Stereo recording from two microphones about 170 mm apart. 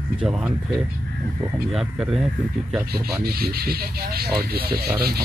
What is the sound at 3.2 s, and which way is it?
Speech, 65° right (ahead or behind).